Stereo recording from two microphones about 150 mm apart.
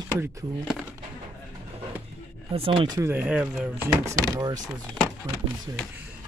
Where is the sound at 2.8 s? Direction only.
25° right (ahead or behind).